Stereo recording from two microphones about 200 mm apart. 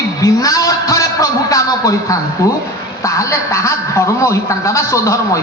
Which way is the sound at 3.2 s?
15° left (ahead or behind).